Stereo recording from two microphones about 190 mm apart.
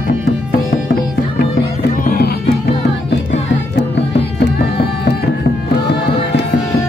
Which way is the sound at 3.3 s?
70° left (ahead or behind).